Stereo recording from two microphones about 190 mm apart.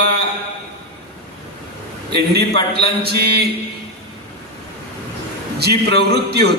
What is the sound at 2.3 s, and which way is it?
A man's voice, 60° right (ahead or behind).